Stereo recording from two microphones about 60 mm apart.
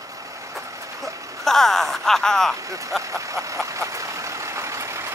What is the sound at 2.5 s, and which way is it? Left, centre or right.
Speech, right.